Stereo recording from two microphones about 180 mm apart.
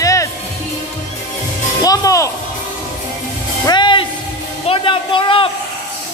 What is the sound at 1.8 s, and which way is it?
Music, 20° left (ahead or behind).